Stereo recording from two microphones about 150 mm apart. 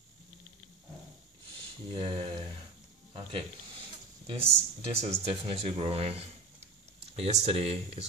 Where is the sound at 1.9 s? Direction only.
35° right (ahead or behind).